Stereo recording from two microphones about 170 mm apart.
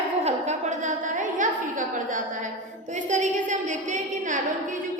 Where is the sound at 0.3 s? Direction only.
45° right (ahead or behind).